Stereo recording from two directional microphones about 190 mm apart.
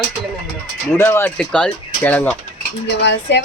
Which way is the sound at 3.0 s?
65° left (ahead or behind).